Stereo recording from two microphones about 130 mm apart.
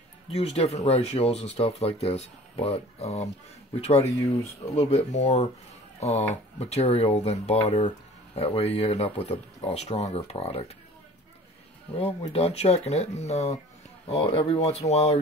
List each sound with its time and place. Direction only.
0.3 s speech: 55° left (ahead or behind)
12.0 s speech: 45° left (ahead or behind)